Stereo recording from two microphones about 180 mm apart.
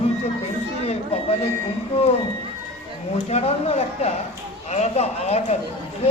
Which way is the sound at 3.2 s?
35° left (ahead or behind).